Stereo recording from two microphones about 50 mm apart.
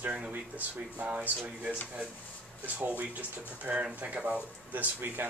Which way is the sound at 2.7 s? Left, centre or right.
Right.